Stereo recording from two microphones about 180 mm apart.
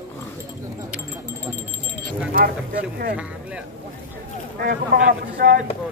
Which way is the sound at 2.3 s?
55° right (ahead or behind).